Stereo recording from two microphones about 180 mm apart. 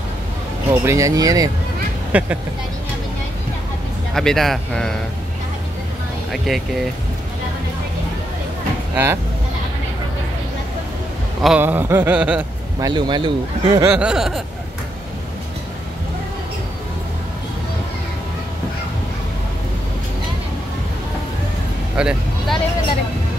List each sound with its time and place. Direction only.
0.7 s a sound: 15° right (ahead or behind)
2.1 s a sound: 5° right (ahead or behind)
4.1 s a man's voice: centre (ahead or behind)
6.3 s a man's voice: centre (ahead or behind)
8.9 s speech: 15° right (ahead or behind)
11.4 s a sound: 10° right (ahead or behind)
12.8 s speech: 25° right (ahead or behind)
13.9 s a man's voice: 5° right (ahead or behind)
21.9 s vehicle: 5° right (ahead or behind)